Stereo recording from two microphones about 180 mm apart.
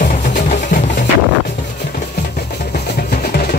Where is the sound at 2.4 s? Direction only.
60° left (ahead or behind).